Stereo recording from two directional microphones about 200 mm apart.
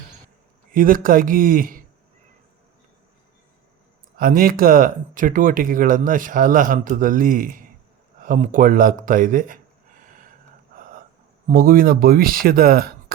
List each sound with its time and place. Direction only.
0.7 s speech: 45° right (ahead or behind)
4.2 s speech: 45° right (ahead or behind)
10.8 s gasp: 45° right (ahead or behind)
11.4 s speech: 45° right (ahead or behind)